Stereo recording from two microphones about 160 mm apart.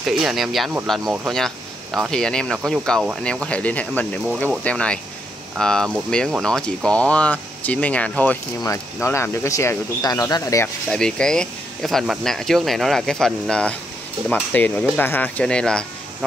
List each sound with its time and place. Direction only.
0.0 s speech: centre (ahead or behind); by 10.7 s 20° left (ahead or behind)
10.9 s speech: 5° left (ahead or behind)